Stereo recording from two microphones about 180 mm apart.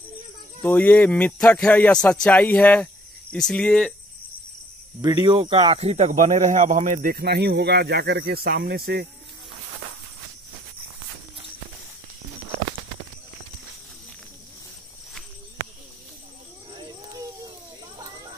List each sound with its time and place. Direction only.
0.6 s speech: 10° left (ahead or behind)
5.0 s speech: 25° right (ahead or behind); by 9.0 s 60° right (ahead or behind)